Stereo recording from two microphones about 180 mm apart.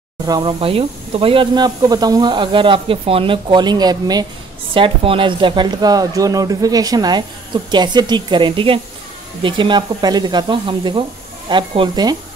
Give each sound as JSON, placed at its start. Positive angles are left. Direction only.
{"t": 0.3, "sound": "a woman's voice", "side_deg": -25}